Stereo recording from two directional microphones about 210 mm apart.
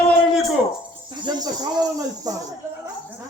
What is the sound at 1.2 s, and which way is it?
Speech, 20° right (ahead or behind).